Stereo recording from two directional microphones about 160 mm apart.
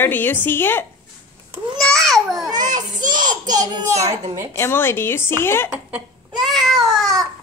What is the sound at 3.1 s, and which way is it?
Speech, 25° right (ahead or behind).